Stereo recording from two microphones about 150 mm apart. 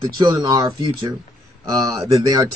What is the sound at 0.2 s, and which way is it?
Speech, 30° right (ahead or behind).